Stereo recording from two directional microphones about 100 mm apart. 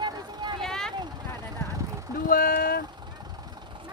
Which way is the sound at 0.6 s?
5° left (ahead or behind).